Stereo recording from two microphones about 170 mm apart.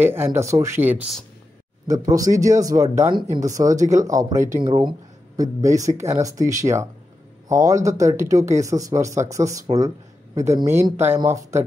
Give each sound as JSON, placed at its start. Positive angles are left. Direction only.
{"t": 0.0, "sound": "a man's voice", "side_deg": -15}